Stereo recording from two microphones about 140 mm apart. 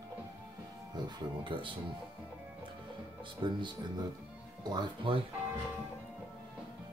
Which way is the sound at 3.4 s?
30° right (ahead or behind).